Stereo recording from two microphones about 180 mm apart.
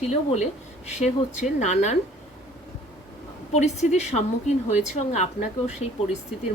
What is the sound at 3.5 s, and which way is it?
A woman's voice, 40° left (ahead or behind).